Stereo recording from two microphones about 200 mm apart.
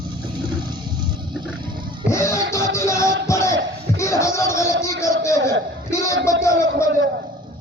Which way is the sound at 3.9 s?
15° left (ahead or behind).